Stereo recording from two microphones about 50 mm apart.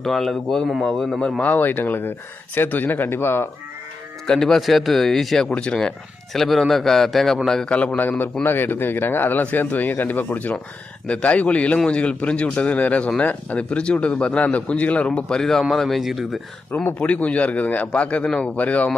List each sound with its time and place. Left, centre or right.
0.0 s speech: centre
1.4 s speech: left
4.3 s a man's voice: centre
5.5 s a man's voice: left
6.3 s a man's voice: centre
7.6 s a man's voice: left
8.5 s a man's voice: left; by 16.3 s centre
17.0 s a man's voice: left
18.6 s speech: left